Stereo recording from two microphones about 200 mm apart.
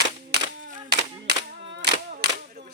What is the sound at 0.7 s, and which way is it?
Clapping, 55° right (ahead or behind).